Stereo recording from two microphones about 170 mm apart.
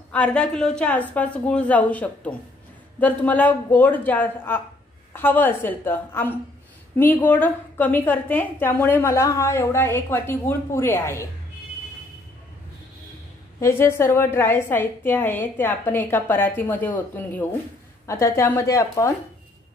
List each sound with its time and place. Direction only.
0.1 s a woman's voice: 5° left (ahead or behind)
13.6 s a woman's voice: 15° left (ahead or behind)